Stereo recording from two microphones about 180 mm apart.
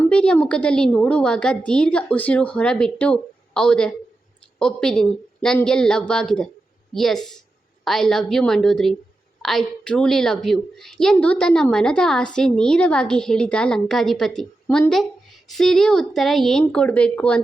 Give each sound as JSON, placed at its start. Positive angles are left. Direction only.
{"t": 0.0, "sound": "a woman's voice", "side_deg": 5}